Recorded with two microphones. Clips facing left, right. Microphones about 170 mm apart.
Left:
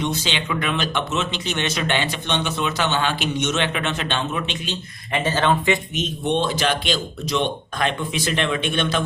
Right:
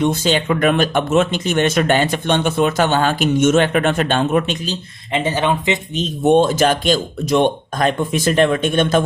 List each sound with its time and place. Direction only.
0.0 s speech: 50° right (ahead or behind)
5.1 s speech: 15° right (ahead or behind)
6.2 s speech: 45° right (ahead or behind)